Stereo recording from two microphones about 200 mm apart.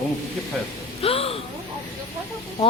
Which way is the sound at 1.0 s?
30° left (ahead or behind).